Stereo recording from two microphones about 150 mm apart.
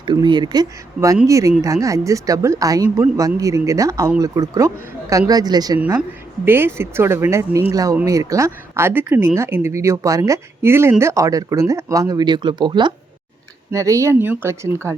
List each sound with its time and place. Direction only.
0.0 s speech: 30° right (ahead or behind)
6.4 s speech: 15° right (ahead or behind); by 12.9 s 30° right (ahead or behind)
13.7 s speech: 20° right (ahead or behind)